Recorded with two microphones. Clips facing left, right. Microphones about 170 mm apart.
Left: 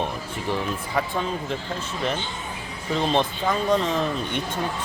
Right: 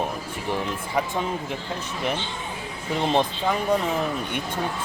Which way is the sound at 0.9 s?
15° right (ahead or behind).